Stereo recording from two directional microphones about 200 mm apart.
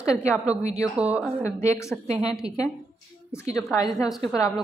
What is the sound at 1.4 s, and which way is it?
Speech, 15° left (ahead or behind).